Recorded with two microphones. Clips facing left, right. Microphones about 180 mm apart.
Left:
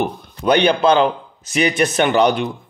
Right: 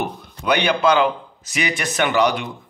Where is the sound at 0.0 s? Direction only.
25° left (ahead or behind).